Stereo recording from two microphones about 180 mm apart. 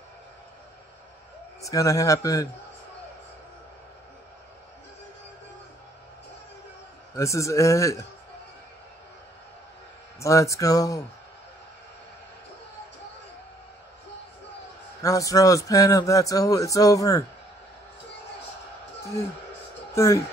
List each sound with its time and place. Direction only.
1.6 s a man's voice: 20° left (ahead or behind)
7.2 s a man's voice: 15° left (ahead or behind)
10.2 s a man's voice: 15° left (ahead or behind)
15.0 s speech: 15° left (ahead or behind)
19.9 s speech: 15° left (ahead or behind)